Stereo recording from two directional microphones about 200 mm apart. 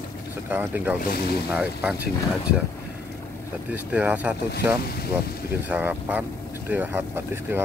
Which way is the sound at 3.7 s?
5° right (ahead or behind).